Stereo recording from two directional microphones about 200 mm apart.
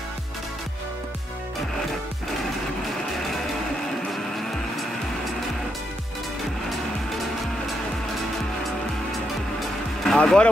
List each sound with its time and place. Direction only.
10.0 s music: 5° left (ahead or behind)